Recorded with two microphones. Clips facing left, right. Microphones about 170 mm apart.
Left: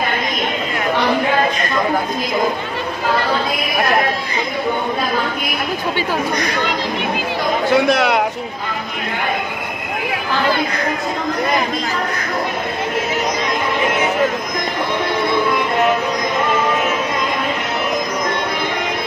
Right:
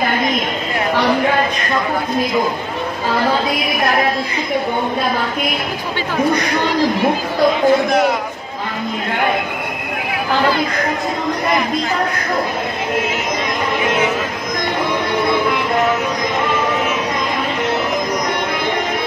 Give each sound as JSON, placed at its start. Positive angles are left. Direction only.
{"t": 7.7, "sound": "a man's voice", "side_deg": 80}